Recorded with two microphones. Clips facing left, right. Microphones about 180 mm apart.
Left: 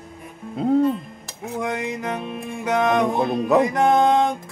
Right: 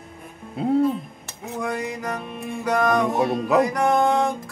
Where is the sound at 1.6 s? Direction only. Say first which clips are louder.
Left 1 dB; 20° left (ahead or behind).